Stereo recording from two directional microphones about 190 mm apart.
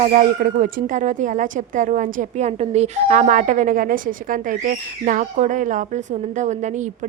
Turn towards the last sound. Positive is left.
turn(degrees=-40)  # may be behind; listen again after turning